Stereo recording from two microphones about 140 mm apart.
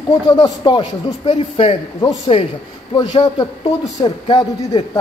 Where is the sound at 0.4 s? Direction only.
35° left (ahead or behind).